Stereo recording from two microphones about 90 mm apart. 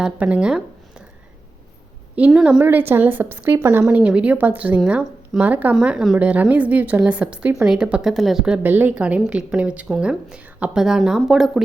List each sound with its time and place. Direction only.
0.0 s speech: 15° right (ahead or behind)
2.1 s a woman's voice: 10° right (ahead or behind)
2.6 s a woman's voice: 20° right (ahead or behind)
3.8 s a woman's voice: 15° right (ahead or behind)